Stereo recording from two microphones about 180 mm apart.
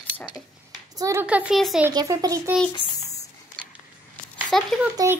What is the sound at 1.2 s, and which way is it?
Speech, 5° right (ahead or behind).